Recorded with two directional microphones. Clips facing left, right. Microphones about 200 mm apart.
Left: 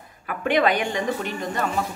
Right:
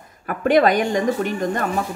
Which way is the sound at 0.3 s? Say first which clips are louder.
Right 5 dB; 40° right (ahead or behind).